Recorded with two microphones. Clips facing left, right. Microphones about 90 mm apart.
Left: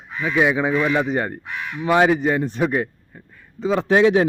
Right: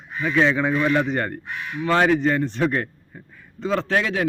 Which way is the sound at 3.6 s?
15° left (ahead or behind).